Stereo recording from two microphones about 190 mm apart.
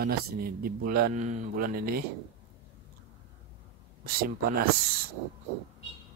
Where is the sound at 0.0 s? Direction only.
50° right (ahead or behind).